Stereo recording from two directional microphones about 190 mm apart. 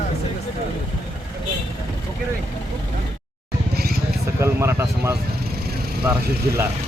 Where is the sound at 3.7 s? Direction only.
55° right (ahead or behind).